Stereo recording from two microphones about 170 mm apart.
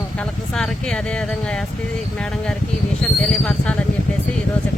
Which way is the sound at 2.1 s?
5° left (ahead or behind).